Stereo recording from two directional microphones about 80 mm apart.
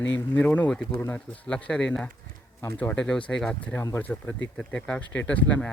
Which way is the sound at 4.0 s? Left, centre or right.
Left.